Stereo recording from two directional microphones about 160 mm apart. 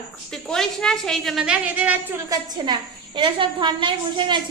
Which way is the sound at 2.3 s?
25° right (ahead or behind).